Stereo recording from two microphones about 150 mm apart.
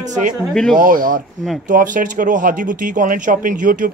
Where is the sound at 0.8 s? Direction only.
65° right (ahead or behind).